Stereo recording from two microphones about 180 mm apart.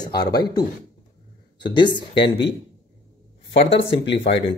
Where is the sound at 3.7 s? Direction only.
30° left (ahead or behind).